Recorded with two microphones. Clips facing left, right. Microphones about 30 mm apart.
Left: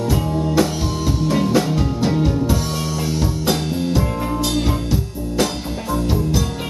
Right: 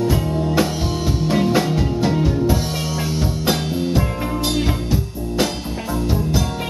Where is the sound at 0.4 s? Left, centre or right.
Centre.